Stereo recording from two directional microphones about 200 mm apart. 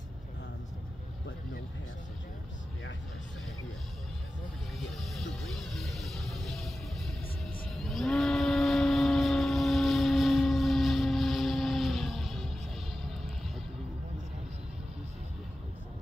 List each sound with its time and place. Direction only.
4.9 s music: centre (ahead or behind)
7.6 s vehicle: centre (ahead or behind)